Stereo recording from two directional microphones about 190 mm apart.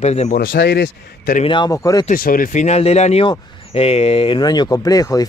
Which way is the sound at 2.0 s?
50° left (ahead or behind).